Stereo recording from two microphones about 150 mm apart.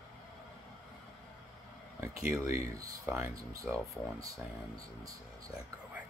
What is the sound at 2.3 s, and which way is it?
Speech, 20° right (ahead or behind).